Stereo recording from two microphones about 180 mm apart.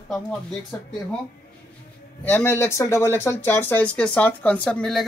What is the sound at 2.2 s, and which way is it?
Speech, 10° left (ahead or behind).